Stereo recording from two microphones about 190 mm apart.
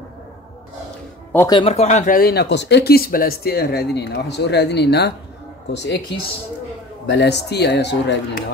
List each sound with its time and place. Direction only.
1.5 s speech: 30° left (ahead or behind); by 8.5 s 65° left (ahead or behind)